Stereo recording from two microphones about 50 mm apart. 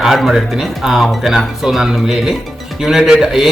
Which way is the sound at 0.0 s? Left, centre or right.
Centre.